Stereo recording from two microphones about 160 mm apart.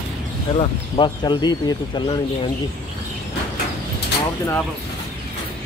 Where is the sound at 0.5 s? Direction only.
30° left (ahead or behind).